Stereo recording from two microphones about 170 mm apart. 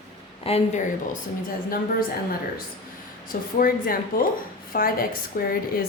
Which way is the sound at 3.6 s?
55° left (ahead or behind).